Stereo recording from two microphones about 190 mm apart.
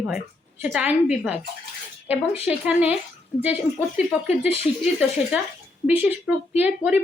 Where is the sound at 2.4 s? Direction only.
5° right (ahead or behind).